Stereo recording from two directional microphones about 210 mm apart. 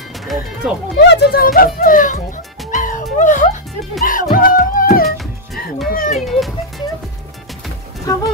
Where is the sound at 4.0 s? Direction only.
40° left (ahead or behind).